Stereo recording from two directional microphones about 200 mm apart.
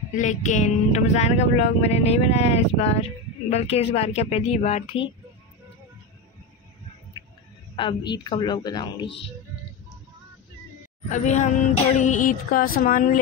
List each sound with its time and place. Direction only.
0.2 s speech: 35° left (ahead or behind)
7.7 s a woman's voice: 25° left (ahead or behind)
11.1 s speech: 35° left (ahead or behind)